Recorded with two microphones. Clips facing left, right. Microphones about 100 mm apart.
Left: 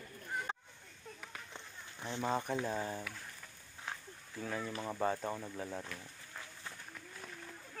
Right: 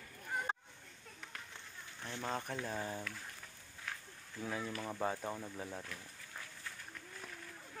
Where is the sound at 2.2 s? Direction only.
10° left (ahead or behind).